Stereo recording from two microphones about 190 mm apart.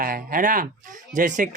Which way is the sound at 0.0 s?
50° right (ahead or behind).